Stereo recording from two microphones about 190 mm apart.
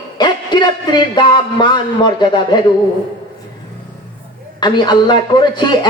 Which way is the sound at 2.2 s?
25° left (ahead or behind).